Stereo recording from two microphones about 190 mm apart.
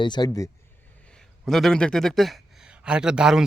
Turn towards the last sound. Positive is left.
turn(degrees=-5)  # may be behind; listen again after turning